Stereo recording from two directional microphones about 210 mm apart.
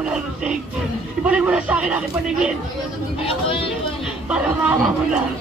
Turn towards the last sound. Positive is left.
turn(degrees=-5)  # may be behind; listen again after turning